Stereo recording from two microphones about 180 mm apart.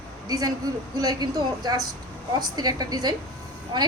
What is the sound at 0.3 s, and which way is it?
Speech, 20° right (ahead or behind).